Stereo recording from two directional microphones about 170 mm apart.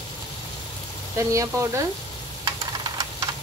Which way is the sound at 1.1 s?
15° right (ahead or behind).